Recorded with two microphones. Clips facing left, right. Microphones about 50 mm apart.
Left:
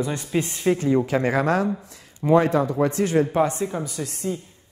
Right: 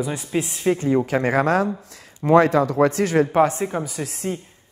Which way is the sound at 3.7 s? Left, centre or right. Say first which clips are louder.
Right 3 dB; right.